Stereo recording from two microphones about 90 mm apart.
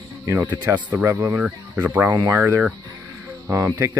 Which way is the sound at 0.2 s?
35° right (ahead or behind).